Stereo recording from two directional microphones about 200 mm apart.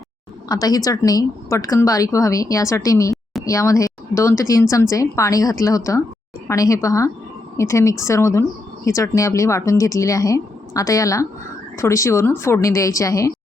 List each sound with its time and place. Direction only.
0.4 s speech: 20° left (ahead or behind)